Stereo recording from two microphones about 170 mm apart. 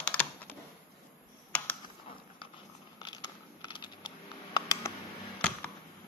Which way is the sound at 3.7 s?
25° left (ahead or behind).